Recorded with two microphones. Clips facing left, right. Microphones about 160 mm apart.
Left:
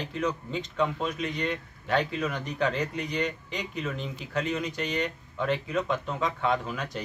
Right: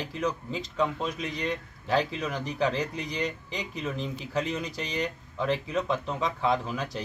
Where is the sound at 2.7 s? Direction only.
35° right (ahead or behind).